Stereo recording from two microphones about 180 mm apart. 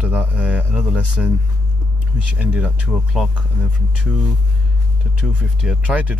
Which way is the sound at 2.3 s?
5° right (ahead or behind).